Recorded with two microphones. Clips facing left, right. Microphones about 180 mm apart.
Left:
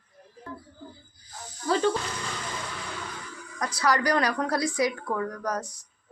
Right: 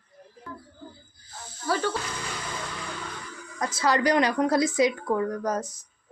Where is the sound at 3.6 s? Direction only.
25° right (ahead or behind).